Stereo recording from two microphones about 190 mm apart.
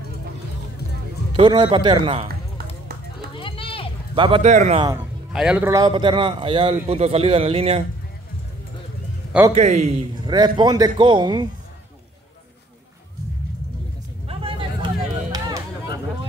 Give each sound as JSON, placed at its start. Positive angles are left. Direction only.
{"t": 1.3, "sound": "a man's voice", "side_deg": -25}
{"t": 3.3, "sound": "a sound", "side_deg": 25}
{"t": 4.1, "sound": "speech", "side_deg": -30}
{"t": 4.5, "sound": "a man's voice", "side_deg": -40}
{"t": 4.9, "sound": "speech", "side_deg": -5}
{"t": 5.7, "sound": "a man's voice", "side_deg": -20}
{"t": 9.5, "sound": "a man's voice", "side_deg": -35}
{"t": 10.3, "sound": "a man's voice", "side_deg": -20}
{"t": 14.2, "sound": "a sound", "side_deg": -30}